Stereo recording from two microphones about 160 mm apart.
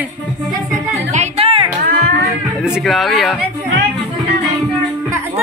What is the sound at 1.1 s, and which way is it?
Music, 40° right (ahead or behind).